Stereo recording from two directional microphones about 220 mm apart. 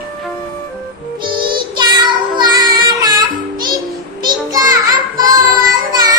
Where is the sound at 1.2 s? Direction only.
20° right (ahead or behind).